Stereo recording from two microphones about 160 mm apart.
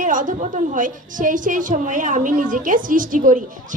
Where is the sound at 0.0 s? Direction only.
55° right (ahead or behind).